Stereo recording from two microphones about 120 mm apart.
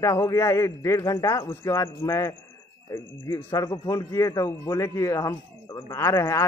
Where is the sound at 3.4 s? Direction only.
30° left (ahead or behind).